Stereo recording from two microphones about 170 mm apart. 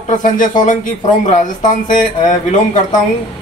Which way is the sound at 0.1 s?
50° left (ahead or behind).